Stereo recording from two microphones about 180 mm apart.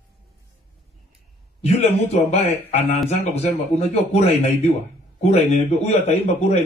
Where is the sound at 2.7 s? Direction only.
35° left (ahead or behind).